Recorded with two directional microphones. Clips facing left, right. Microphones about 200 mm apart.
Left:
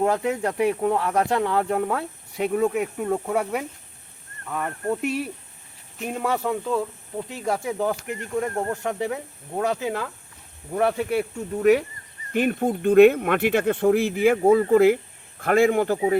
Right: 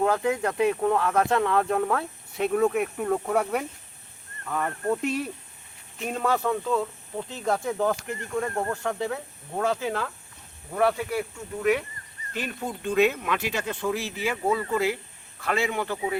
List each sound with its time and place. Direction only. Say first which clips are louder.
0.0 s speech: left 1 dB; 15° left (ahead or behind)
11.6 s speech: left 6 dB; 40° left (ahead or behind)
12.3 s speech: left 10 dB; 55° left (ahead or behind)